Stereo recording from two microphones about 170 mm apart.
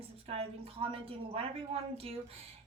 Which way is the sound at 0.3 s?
35° right (ahead or behind).